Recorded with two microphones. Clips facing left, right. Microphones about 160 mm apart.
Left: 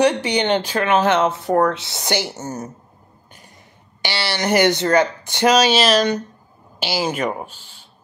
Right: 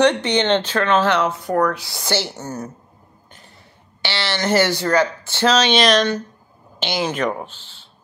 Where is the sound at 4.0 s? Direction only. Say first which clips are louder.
Even; 15° left (ahead or behind).